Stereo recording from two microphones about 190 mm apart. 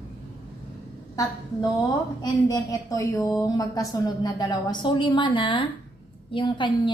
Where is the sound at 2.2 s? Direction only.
20° left (ahead or behind).